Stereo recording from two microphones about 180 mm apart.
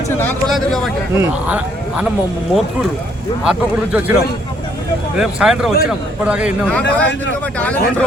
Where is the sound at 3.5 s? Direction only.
5° right (ahead or behind).